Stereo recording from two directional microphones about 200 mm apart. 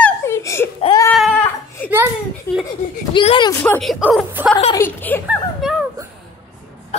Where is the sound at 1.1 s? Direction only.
Centre (ahead or behind).